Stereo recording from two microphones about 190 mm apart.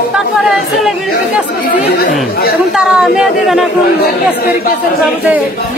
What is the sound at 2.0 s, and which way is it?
Speech, 50° left (ahead or behind).